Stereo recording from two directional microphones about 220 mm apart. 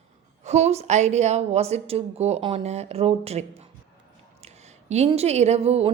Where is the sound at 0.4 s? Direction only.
30° right (ahead or behind).